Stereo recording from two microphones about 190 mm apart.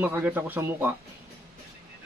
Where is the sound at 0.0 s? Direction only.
10° right (ahead or behind).